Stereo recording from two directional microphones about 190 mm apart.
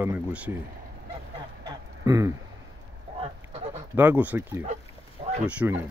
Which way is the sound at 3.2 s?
30° right (ahead or behind).